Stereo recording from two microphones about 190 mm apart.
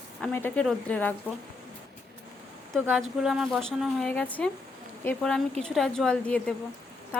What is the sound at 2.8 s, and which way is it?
Speech, 5° right (ahead or behind).